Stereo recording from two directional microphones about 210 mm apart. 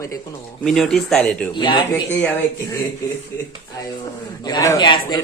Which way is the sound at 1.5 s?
20° left (ahead or behind).